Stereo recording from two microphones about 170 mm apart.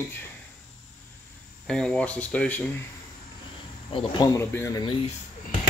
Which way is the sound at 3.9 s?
25° left (ahead or behind).